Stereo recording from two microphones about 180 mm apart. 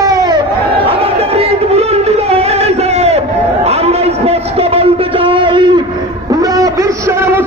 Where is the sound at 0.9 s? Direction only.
35° right (ahead or behind).